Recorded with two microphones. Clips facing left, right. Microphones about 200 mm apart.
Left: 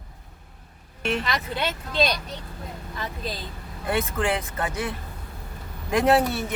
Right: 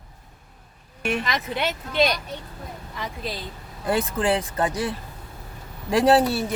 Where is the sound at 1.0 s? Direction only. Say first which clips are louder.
Right 1 dB; 15° right (ahead or behind).